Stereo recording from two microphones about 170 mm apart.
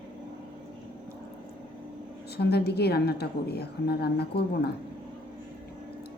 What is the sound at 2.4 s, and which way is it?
A woman's voice, 70° left (ahead or behind).